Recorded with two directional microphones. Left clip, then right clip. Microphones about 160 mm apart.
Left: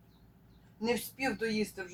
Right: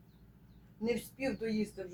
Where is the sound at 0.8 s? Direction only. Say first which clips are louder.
Left 3 dB; 10° left (ahead or behind).